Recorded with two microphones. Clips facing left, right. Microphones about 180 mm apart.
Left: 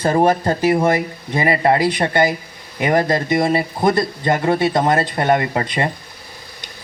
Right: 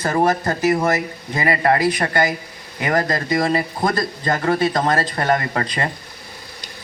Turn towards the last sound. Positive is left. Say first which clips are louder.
# left 3 dB
turn(degrees=25)  # may be behind; listen again after turning